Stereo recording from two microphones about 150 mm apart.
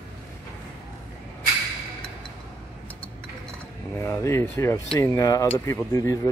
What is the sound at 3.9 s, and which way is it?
Speech, 20° left (ahead or behind).